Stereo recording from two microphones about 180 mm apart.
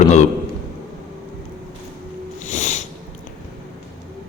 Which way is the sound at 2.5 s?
40° left (ahead or behind).